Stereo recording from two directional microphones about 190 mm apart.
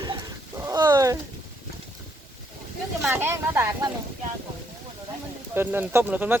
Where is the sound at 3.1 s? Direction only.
10° right (ahead or behind).